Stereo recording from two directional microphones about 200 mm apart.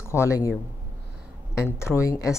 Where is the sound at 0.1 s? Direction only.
15° left (ahead or behind).